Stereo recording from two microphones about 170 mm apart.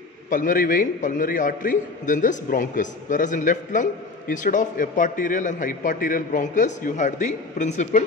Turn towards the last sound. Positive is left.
turn(degrees=45)  # may be behind; listen again after turning